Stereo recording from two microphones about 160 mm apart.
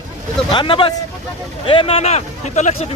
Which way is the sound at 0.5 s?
30° left (ahead or behind).